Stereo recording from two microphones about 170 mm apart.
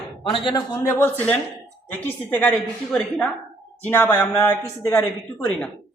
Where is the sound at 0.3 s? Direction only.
30° left (ahead or behind).